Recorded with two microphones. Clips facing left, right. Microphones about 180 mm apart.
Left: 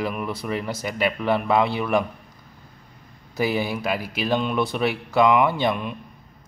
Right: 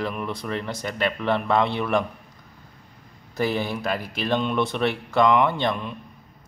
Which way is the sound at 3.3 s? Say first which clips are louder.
Left 1 dB; 5° left (ahead or behind).